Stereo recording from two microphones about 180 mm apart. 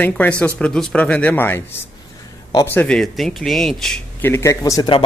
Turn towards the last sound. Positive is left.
turn(degrees=25)  # may be behind; listen again after turning